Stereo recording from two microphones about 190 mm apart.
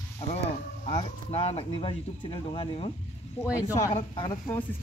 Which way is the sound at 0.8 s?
35° left (ahead or behind).